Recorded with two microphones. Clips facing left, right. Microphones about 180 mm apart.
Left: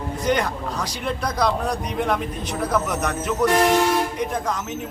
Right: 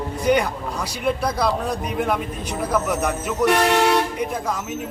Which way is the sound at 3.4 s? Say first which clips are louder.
Even; 70° right (ahead or behind).